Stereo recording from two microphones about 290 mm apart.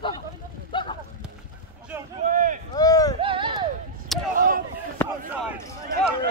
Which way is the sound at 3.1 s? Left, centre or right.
Centre.